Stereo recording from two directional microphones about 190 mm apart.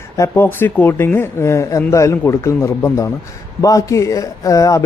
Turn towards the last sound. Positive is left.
turn(degrees=15)  # may be behind; listen again after turning